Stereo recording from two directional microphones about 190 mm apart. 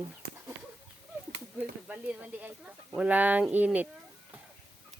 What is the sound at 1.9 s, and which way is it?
Speech, 10° right (ahead or behind).